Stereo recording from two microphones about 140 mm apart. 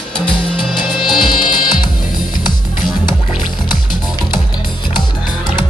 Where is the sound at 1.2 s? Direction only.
35° left (ahead or behind).